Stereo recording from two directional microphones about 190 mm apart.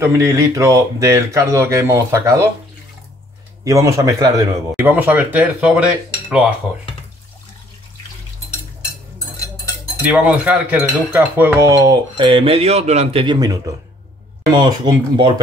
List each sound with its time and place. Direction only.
0.0 s speech: 15° right (ahead or behind)
3.6 s speech: 15° right (ahead or behind)
6.2 s cutlery: 5° right (ahead or behind)
10.0 s speech: 5° right (ahead or behind); by 15.4 s 25° right (ahead or behind)